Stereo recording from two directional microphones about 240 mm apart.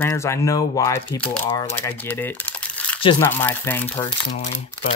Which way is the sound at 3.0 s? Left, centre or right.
Centre.